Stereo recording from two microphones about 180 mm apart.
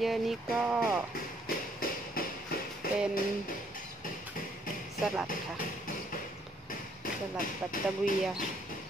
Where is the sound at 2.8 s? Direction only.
55° left (ahead or behind).